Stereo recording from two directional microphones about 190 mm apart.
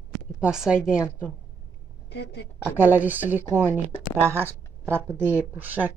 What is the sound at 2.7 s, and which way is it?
A woman's voice, 10° right (ahead or behind).